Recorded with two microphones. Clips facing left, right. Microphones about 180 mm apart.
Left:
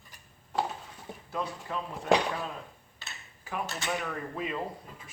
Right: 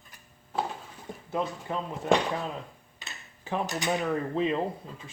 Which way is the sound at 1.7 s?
25° right (ahead or behind).